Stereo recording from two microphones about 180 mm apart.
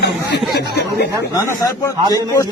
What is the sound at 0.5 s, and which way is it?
Speech, 65° left (ahead or behind).